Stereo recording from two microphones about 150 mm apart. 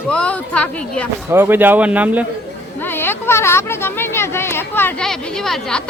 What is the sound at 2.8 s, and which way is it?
Speech, 15° left (ahead or behind).